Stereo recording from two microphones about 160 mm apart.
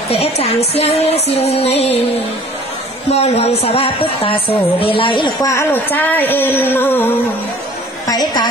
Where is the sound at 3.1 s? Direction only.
40° left (ahead or behind); by 7.1 s 15° left (ahead or behind).